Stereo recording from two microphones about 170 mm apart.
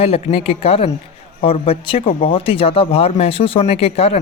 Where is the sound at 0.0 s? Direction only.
35° left (ahead or behind).